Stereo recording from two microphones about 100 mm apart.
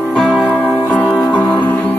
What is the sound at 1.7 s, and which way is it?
Music, 20° left (ahead or behind).